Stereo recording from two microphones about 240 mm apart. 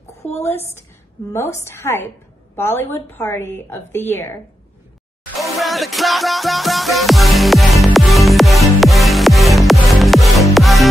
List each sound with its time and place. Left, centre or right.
0.0 s a sound: left
0.4 s a woman's voice: centre
5.4 s music: centre